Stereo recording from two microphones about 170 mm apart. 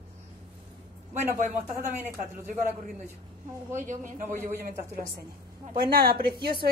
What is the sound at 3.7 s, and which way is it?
Speech, 50° right (ahead or behind).